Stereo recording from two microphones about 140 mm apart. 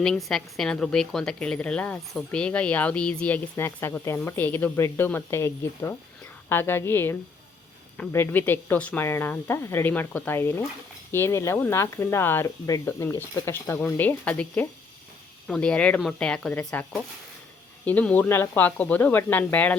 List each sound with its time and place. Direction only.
0.0 s speech: 5° left (ahead or behind)